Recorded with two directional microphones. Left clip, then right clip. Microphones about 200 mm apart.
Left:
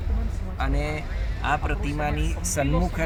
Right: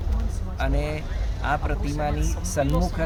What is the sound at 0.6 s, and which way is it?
Speech, 25° right (ahead or behind).